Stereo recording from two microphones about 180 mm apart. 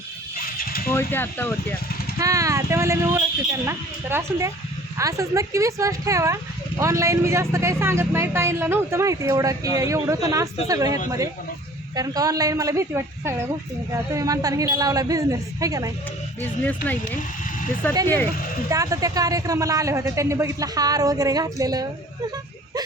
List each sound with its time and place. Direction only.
0.6 s a sound: 55° left (ahead or behind)
0.9 s speech: 10° left (ahead or behind)
2.1 s speech: 20° right (ahead or behind)
16.4 s speech: 10° left (ahead or behind)
18.7 s speech: 20° right (ahead or behind)